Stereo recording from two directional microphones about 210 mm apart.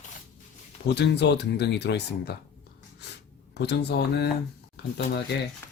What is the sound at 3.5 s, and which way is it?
Speech, 55° left (ahead or behind).